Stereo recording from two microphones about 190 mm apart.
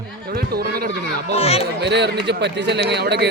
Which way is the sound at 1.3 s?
35° left (ahead or behind).